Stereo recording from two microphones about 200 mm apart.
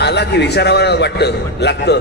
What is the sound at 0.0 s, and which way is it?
A man's voice, 55° left (ahead or behind).